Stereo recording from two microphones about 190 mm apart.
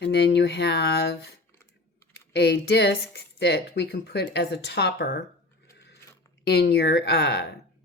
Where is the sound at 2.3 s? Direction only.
60° left (ahead or behind).